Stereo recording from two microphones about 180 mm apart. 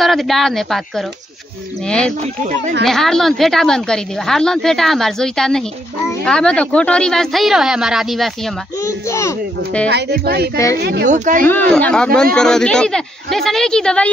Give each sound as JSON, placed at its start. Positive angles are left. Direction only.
{"t": 0.0, "sound": "a woman's voice", "side_deg": 0}
{"t": 8.8, "sound": "a child's voice", "side_deg": 15}
{"t": 9.8, "sound": "speech", "side_deg": -65}
{"t": 11.1, "sound": "speech", "side_deg": -45}
{"t": 11.4, "sound": "a woman's voice", "side_deg": 10}